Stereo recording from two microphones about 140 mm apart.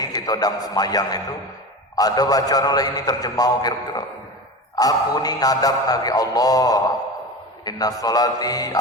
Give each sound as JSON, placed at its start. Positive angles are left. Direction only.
{"t": 0.0, "sound": "a man's voice", "side_deg": 25}